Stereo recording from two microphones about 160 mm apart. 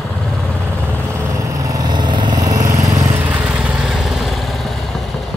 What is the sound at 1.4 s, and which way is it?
Lawn mower, 20° right (ahead or behind).